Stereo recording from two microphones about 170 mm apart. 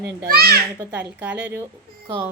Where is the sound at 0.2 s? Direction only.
65° right (ahead or behind).